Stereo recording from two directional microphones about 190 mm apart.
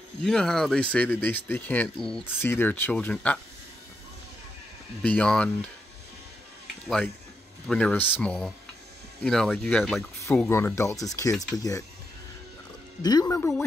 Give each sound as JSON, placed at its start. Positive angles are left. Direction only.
{"t": 0.2, "sound": "speech", "side_deg": 5}
{"t": 5.0, "sound": "speech", "side_deg": 5}
{"t": 7.6, "sound": "speech", "side_deg": 5}
{"t": 13.0, "sound": "speech", "side_deg": 20}